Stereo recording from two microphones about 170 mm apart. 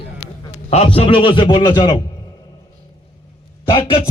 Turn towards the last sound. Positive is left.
turn(degrees=30)  # may be behind; listen again after turning